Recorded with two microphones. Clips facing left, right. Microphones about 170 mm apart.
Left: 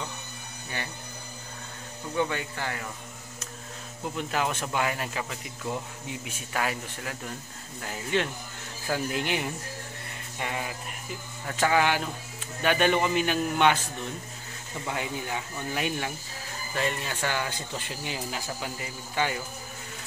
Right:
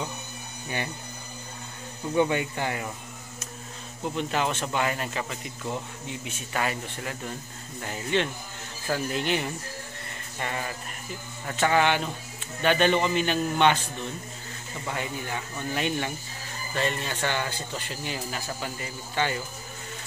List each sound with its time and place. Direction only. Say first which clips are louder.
2.1 s speech: right 5 dB; 20° right (ahead or behind)
4.1 s speech: right 2 dB; 5° left (ahead or behind)
14.9 s speech: even; 10° left (ahead or behind)